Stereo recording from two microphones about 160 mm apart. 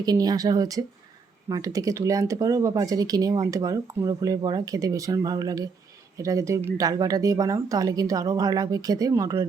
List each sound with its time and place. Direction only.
0.0 s speech: 25° right (ahead or behind)